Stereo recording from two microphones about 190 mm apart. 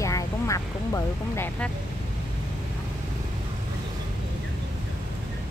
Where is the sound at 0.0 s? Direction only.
15° left (ahead or behind).